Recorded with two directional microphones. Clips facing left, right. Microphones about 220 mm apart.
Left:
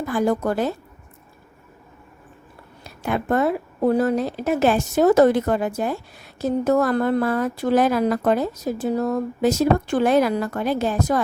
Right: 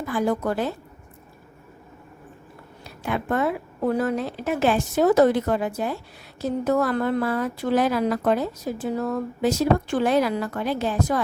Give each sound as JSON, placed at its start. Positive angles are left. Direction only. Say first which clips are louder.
{"t": 0.1, "sound": "speech", "louder": "left 2 dB", "side_deg": 45}
{"t": 3.0, "sound": "speech", "louder": "left 3 dB", "side_deg": 40}